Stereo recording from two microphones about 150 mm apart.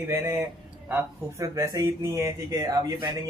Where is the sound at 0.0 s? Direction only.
15° right (ahead or behind).